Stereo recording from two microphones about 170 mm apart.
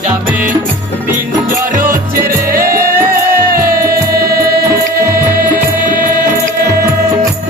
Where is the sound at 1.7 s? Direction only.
55° right (ahead or behind).